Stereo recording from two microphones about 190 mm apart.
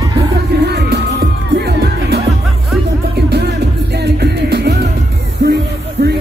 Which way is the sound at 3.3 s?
60° right (ahead or behind).